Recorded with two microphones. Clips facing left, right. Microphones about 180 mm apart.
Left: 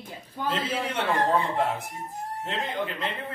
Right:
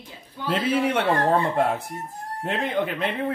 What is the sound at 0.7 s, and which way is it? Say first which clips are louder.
Speech: right 6 dB; 60° right (ahead or behind).